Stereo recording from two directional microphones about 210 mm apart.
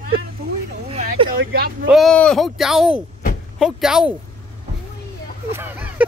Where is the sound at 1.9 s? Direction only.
Centre (ahead or behind).